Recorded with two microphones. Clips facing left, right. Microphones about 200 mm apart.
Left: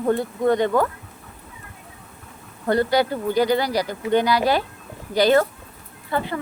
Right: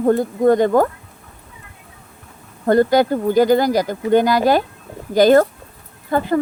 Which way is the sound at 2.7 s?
45° right (ahead or behind).